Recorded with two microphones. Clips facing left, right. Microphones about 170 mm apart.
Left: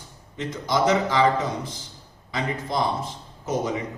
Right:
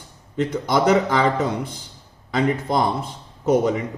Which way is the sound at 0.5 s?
60° right (ahead or behind).